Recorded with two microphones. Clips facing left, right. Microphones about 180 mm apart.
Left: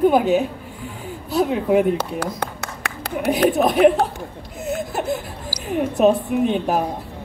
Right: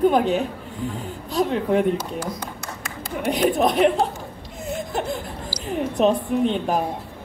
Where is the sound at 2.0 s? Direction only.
65° left (ahead or behind).